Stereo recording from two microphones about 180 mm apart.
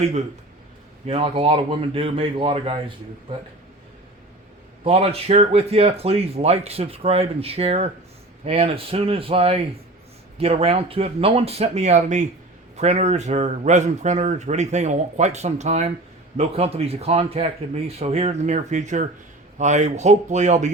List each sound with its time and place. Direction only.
1.0 s a man's voice: 30° right (ahead or behind)
4.8 s a man's voice: 35° right (ahead or behind)